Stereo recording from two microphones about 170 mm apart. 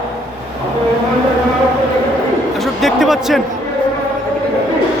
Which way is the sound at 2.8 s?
Centre (ahead or behind).